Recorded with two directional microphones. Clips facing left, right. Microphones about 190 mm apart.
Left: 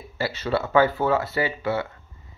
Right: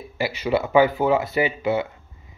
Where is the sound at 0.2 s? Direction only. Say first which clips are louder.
Right 3 dB; 15° right (ahead or behind).